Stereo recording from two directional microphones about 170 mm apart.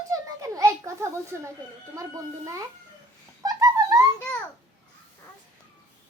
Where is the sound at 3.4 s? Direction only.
20° right (ahead or behind).